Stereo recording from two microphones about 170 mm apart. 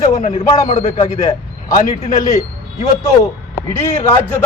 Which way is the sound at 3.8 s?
15° left (ahead or behind).